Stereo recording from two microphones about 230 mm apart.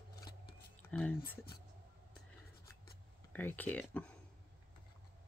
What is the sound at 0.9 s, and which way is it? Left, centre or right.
Speech, centre.